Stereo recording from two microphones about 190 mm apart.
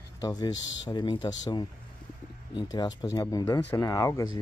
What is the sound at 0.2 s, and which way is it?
Speech, 20° left (ahead or behind).